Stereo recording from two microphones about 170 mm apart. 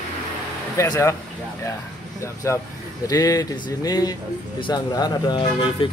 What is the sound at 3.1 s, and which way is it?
Speech, 20° left (ahead or behind).